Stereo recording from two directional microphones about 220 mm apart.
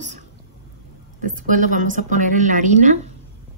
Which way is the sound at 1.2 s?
35° right (ahead or behind).